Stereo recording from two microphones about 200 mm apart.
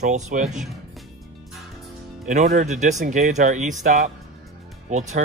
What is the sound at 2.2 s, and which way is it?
Speech, 35° right (ahead or behind).